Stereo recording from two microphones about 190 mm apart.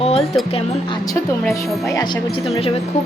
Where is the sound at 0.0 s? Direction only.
30° left (ahead or behind).